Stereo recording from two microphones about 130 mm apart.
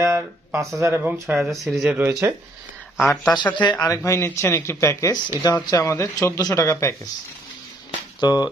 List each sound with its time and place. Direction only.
0.0 s speech: 20° right (ahead or behind)
1.5 s speech: centre (ahead or behind); by 2.3 s 15° right (ahead or behind)
3.0 s speech: centre (ahead or behind)
3.3 s speech: 35° left (ahead or behind)
7.9 s a sound: 30° left (ahead or behind)